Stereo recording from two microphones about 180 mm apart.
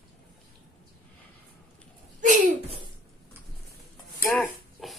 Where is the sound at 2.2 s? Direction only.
45° right (ahead or behind).